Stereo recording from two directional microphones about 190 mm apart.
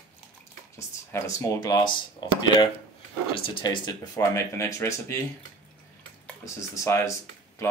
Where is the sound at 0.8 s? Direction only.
15° left (ahead or behind).